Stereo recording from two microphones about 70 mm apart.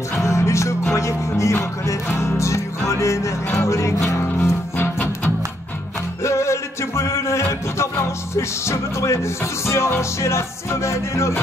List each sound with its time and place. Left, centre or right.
0.1 s music: left
4.9 s music: left
6.2 s music: left